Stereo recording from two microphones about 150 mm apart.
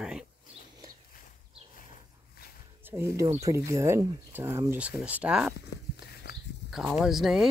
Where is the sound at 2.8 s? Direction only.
15° right (ahead or behind).